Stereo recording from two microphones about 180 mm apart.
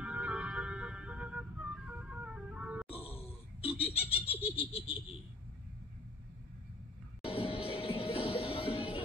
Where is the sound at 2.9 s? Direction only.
30° left (ahead or behind).